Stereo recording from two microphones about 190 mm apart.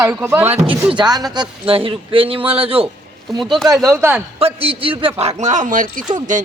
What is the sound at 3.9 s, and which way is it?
Speech, 10° right (ahead or behind).